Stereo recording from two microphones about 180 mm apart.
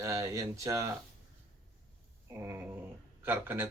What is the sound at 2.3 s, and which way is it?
Speech, 15° right (ahead or behind).